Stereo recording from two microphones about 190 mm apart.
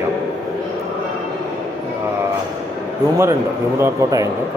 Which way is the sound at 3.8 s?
15° right (ahead or behind).